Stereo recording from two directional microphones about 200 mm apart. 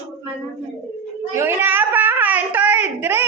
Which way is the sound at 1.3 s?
10° right (ahead or behind).